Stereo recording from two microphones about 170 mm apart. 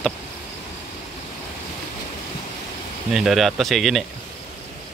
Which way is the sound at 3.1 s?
Centre (ahead or behind).